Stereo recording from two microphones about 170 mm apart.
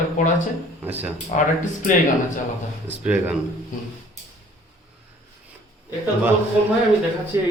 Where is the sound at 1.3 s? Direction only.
50° left (ahead or behind).